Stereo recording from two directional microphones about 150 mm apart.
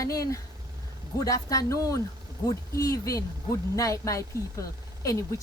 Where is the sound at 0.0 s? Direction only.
20° left (ahead or behind).